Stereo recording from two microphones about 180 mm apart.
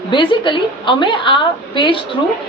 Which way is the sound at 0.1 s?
25° left (ahead or behind).